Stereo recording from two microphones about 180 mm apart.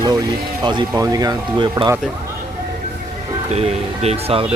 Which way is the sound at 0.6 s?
20° right (ahead or behind).